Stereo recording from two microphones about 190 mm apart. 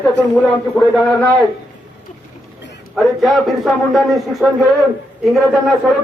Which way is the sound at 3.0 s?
Centre (ahead or behind).